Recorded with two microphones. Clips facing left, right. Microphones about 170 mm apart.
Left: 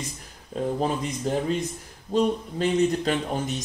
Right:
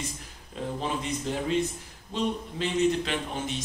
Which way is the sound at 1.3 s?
45° left (ahead or behind).